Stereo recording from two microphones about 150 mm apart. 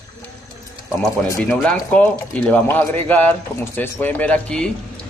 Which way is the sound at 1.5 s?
5° left (ahead or behind).